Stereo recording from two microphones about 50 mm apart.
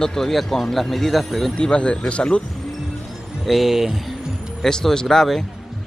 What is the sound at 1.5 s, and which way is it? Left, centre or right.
Speech, centre.